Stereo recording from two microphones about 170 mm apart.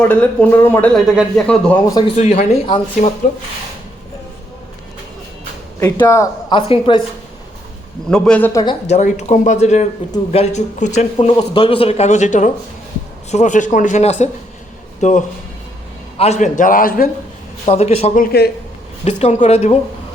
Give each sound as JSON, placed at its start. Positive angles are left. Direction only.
{"t": 0.0, "sound": "speech", "side_deg": 10}
{"t": 0.9, "sound": "speech", "side_deg": -5}
{"t": 2.1, "sound": "speech", "side_deg": 40}
{"t": 5.8, "sound": "speech", "side_deg": 20}
{"t": 6.6, "sound": "speech", "side_deg": 30}
{"t": 8.1, "sound": "speech", "side_deg": 5}
{"t": 8.9, "sound": "speech", "side_deg": 45}
{"t": 11.5, "sound": "speech", "side_deg": 30}
{"t": 17.7, "sound": "speech", "side_deg": 40}
{"t": 18.2, "sound": "a man's voice", "side_deg": 70}
{"t": 19.0, "sound": "speech", "side_deg": 40}